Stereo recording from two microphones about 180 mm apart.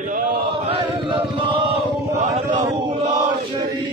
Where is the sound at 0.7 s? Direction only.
30° right (ahead or behind).